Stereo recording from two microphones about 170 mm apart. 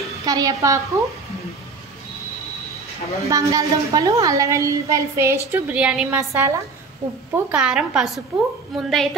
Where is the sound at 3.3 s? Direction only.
20° right (ahead or behind).